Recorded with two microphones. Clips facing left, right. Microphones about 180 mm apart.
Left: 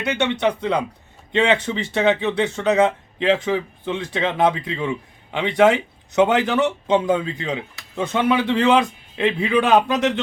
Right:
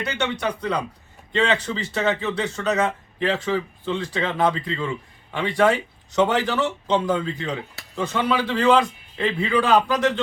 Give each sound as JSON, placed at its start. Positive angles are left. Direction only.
{"t": 0.0, "sound": "speech", "side_deg": 20}